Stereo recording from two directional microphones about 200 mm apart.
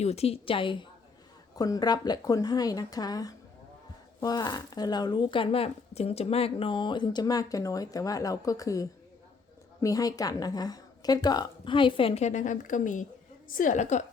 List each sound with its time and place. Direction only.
0.0 s a woman's voice: 30° left (ahead or behind)